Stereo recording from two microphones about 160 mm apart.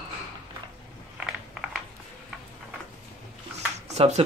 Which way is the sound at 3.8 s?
40° right (ahead or behind).